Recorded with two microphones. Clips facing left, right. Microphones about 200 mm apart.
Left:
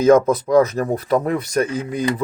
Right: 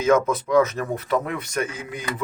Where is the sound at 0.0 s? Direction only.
35° left (ahead or behind).